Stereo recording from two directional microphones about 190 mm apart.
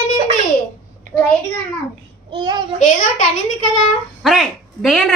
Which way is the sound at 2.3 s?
25° right (ahead or behind).